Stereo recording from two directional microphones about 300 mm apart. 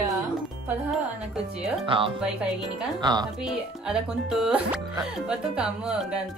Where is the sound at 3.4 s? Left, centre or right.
Centre.